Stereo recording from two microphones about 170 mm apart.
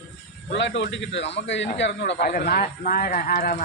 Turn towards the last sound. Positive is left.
turn(degrees=50)  # may be behind; listen again after turning